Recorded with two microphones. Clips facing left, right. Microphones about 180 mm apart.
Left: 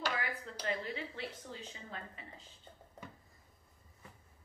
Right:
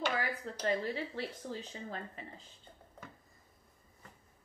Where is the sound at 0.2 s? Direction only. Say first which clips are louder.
Right 5 dB; 35° right (ahead or behind).